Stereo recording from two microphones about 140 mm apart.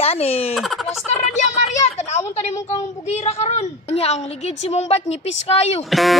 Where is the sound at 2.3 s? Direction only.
55° left (ahead or behind).